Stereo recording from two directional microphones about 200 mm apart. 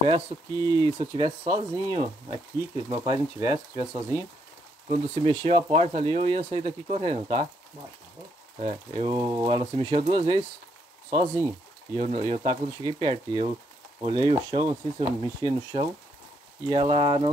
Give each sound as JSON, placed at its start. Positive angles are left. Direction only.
{"t": 0.3, "sound": "speech", "side_deg": -25}
{"t": 8.5, "sound": "speech", "side_deg": -25}